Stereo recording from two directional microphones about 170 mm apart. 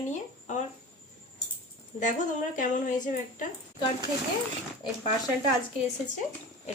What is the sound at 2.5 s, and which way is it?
Speech, 50° left (ahead or behind).